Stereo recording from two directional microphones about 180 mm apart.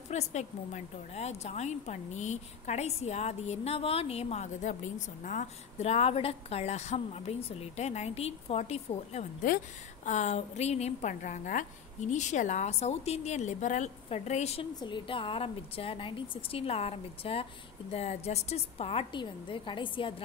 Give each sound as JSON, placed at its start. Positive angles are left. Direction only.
{"t": 0.1, "sound": "a woman's voice", "side_deg": 40}